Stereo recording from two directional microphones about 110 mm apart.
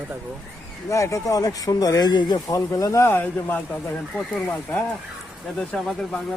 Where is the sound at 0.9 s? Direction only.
30° left (ahead or behind).